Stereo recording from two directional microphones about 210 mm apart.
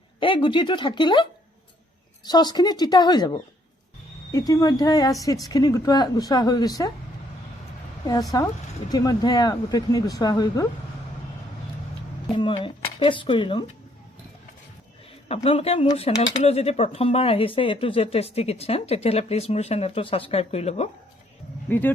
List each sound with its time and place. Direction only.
0.2 s speech: 25° left (ahead or behind)
8.3 s speech: 20° left (ahead or behind)
12.4 s speech: 25° left (ahead or behind)
15.4 s speech: 30° left (ahead or behind)
21.7 s speech: 10° left (ahead or behind)